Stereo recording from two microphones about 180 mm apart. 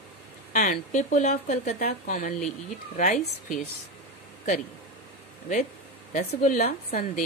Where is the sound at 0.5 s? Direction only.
45° left (ahead or behind).